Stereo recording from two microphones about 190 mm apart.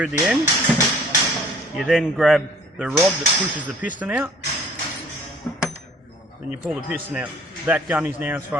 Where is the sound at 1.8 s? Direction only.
Centre (ahead or behind).